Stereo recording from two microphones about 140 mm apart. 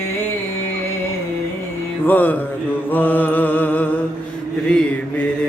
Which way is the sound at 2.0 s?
10° left (ahead or behind).